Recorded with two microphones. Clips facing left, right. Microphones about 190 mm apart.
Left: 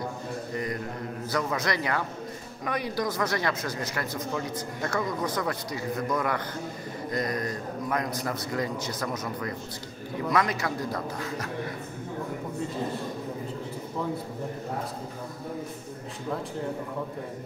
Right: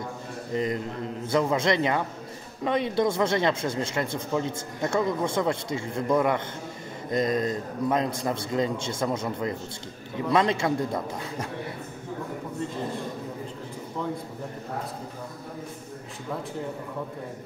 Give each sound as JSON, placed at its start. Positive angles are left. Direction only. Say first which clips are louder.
{"t": 0.5, "sound": "a man's voice", "louder": "right 7 dB", "side_deg": -20}